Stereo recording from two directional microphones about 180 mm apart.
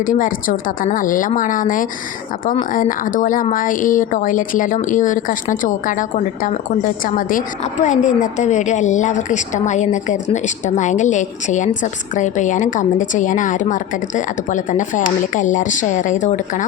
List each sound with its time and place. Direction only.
0.0 s a woman's voice: 50° left (ahead or behind)